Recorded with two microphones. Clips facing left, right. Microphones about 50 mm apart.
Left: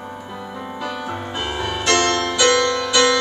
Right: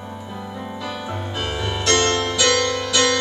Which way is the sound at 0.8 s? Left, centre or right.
Centre.